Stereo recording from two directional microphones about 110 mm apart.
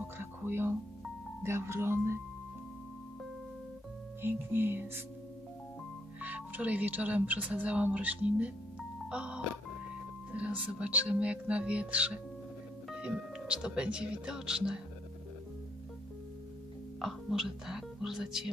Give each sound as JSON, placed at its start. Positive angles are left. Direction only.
{"t": 0.0, "sound": "speech", "side_deg": -20}
{"t": 4.2, "sound": "speech", "side_deg": -20}
{"t": 6.2, "sound": "speech", "side_deg": -15}
{"t": 17.0, "sound": "speech", "side_deg": -5}